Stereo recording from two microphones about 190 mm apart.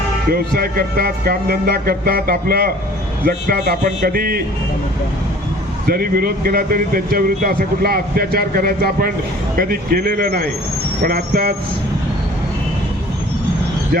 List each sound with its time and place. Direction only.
0.3 s a man's voice: 50° right (ahead or behind)
5.9 s a man's voice: 50° right (ahead or behind)